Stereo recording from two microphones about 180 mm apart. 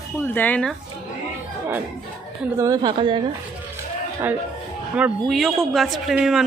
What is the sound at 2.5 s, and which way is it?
Speech, 20° right (ahead or behind).